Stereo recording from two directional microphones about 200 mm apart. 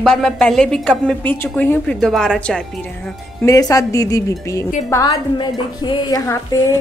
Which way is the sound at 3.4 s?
15° left (ahead or behind).